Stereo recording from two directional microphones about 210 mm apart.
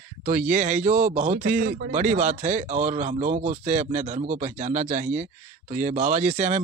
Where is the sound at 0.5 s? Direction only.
35° right (ahead or behind).